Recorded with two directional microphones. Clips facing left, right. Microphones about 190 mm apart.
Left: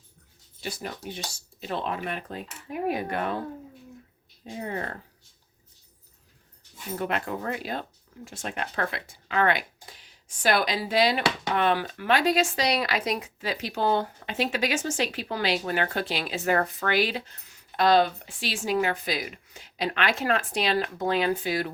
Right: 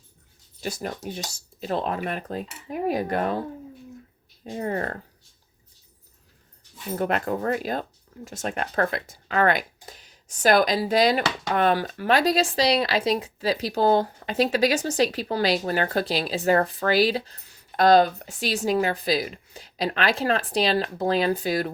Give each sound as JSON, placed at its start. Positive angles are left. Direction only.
{"t": 0.6, "sound": "speech", "side_deg": -45}
{"t": 4.5, "sound": "speech", "side_deg": -45}
{"t": 6.9, "sound": "speech", "side_deg": -40}